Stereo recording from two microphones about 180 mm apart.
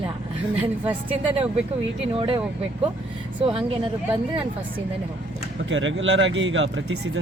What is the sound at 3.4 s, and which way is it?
Speech, 30° right (ahead or behind).